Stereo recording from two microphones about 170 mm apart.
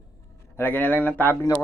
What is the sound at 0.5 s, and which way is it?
Speech, 10° left (ahead or behind).